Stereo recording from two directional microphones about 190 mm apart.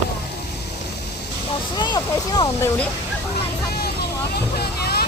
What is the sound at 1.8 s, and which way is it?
Speech, 20° left (ahead or behind).